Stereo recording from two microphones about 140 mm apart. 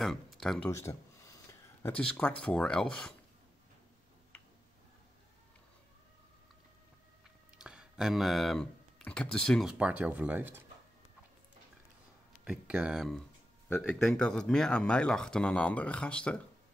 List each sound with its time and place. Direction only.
0.0 s speech: centre (ahead or behind)
0.7 s a sound: 20° left (ahead or behind)
2.4 s speech: 5° left (ahead or behind)
7.5 s a sound: 5° right (ahead or behind)
9.0 s speech: 5° left (ahead or behind); by 10.6 s 15° right (ahead or behind)
12.4 s speech: 10° right (ahead or behind); by 16.3 s 5° left (ahead or behind)